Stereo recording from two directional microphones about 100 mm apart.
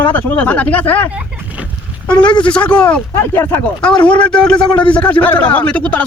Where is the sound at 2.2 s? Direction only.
50° left (ahead or behind).